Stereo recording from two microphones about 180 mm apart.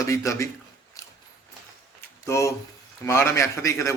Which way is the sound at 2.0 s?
15° left (ahead or behind).